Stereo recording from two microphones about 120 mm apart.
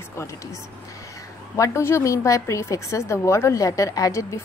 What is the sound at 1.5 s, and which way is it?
A woman's voice, 25° left (ahead or behind).